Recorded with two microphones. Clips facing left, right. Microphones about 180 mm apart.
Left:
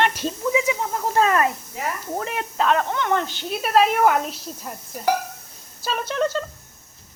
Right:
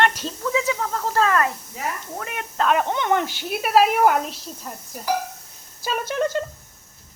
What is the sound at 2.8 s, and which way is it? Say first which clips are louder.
Speech: right 1 dB; 15° right (ahead or behind).